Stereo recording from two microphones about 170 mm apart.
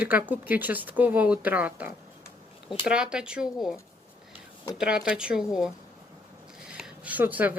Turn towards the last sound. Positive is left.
turn(degrees=-10)  # may be behind; listen again after turning